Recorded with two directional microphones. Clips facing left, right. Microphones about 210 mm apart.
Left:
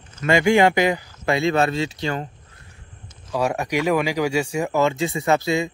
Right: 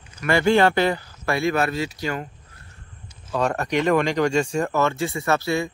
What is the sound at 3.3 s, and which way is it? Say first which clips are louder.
Speech: even; 10° left (ahead or behind).